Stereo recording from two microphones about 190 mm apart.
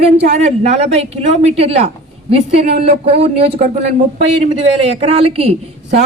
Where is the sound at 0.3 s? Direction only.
35° right (ahead or behind).